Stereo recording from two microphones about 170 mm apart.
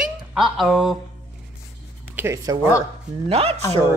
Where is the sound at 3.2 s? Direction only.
35° right (ahead or behind).